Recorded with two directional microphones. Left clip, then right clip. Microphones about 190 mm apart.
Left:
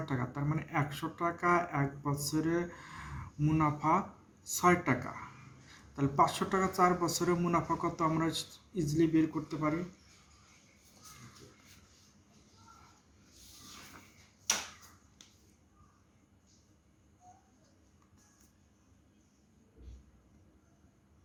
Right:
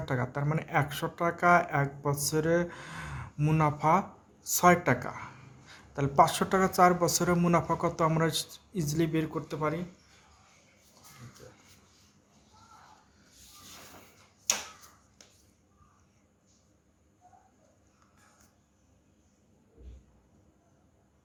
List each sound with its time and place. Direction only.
0.0 s speech: 60° right (ahead or behind)